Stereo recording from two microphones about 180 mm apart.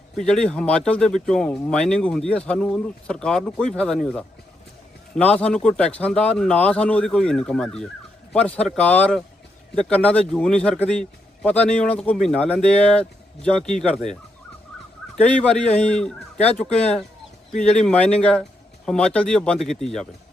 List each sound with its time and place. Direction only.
0.2 s speech: 5° left (ahead or behind)
15.6 s speech: 35° left (ahead or behind)
15.9 s fowl: 5° left (ahead or behind)
16.6 s speech: 35° left (ahead or behind)
17.6 s speech: 5° left (ahead or behind)